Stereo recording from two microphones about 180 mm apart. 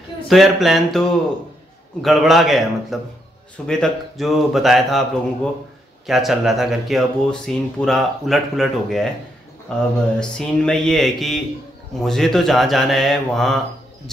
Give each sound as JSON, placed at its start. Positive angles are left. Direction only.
{"t": 0.3, "sound": "speech", "side_deg": 0}